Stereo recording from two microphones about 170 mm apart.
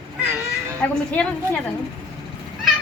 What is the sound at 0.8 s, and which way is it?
Speech, 5° left (ahead or behind).